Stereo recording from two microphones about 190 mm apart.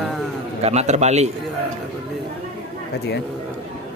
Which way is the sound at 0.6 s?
35° right (ahead or behind).